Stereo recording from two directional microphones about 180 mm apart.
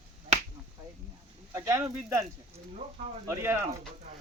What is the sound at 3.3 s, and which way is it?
Speech, 15° right (ahead or behind).